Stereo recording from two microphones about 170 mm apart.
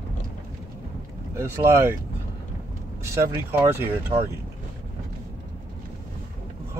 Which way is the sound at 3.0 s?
15° right (ahead or behind).